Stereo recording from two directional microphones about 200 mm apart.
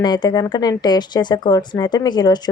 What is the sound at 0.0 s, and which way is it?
A woman's voice, 20° left (ahead or behind).